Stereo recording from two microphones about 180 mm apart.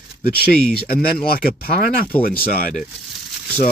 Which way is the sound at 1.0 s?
55° left (ahead or behind).